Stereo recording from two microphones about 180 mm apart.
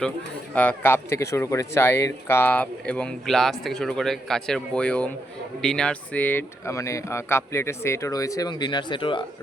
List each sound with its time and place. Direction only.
0.5 s speech: 10° left (ahead or behind); by 9.2 s 25° left (ahead or behind)